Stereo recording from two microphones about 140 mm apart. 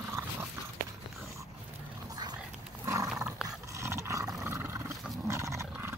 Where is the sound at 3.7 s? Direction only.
20° right (ahead or behind).